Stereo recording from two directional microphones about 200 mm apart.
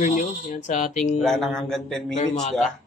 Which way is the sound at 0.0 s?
40° left (ahead or behind).